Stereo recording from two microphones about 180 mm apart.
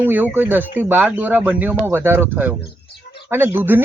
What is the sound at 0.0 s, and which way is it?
Speech, 10° right (ahead or behind).